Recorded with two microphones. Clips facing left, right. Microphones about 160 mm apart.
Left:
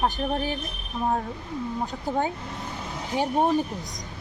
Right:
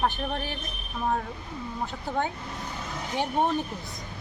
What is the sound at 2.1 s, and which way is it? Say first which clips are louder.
Speech: left 3 dB; 10° left (ahead or behind).